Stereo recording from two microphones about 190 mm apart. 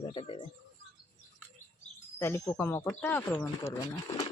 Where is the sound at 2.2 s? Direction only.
15° left (ahead or behind).